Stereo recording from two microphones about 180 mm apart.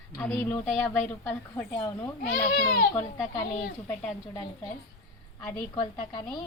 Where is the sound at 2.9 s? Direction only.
15° left (ahead or behind).